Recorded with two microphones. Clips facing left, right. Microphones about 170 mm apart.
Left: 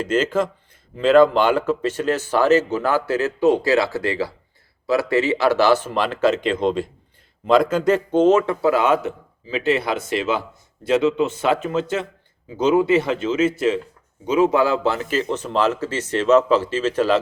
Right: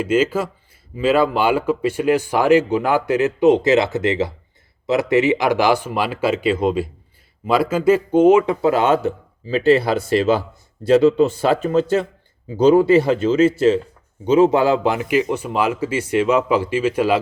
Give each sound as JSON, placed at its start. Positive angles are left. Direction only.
{"t": 0.0, "sound": "speech", "side_deg": -10}